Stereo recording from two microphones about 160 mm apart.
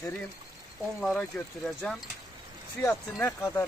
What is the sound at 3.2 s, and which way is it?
Speech, 15° left (ahead or behind).